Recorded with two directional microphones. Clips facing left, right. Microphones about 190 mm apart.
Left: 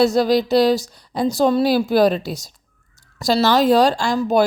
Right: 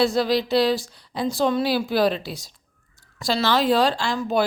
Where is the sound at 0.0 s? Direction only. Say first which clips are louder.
Left 5 dB; 40° left (ahead or behind).